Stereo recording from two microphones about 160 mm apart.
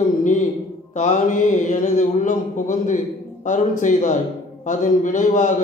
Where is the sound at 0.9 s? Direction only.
50° left (ahead or behind).